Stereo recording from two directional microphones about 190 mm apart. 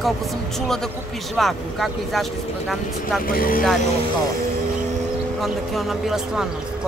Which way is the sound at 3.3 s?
50° left (ahead or behind).